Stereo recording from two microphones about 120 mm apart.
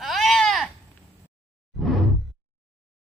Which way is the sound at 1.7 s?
Centre (ahead or behind).